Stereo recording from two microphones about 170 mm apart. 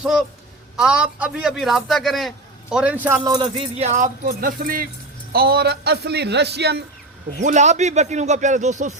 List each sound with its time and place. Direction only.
0.0 s a man's voice: 5° right (ahead or behind)
3.2 s music: 25° right (ahead or behind)
3.8 s a man's voice: 45° right (ahead or behind); by 6.8 s 75° right (ahead or behind)
7.4 s speech: 45° right (ahead or behind)